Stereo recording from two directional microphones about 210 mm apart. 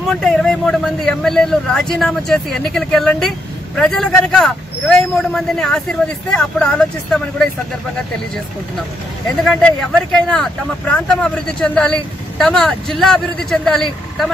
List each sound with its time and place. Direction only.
0.0 s a man's voice: centre (ahead or behind)
9.4 s a man's voice: centre (ahead or behind)